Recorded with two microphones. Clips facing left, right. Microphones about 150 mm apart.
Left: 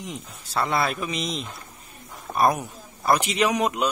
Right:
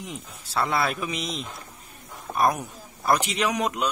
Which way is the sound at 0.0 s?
5° right (ahead or behind).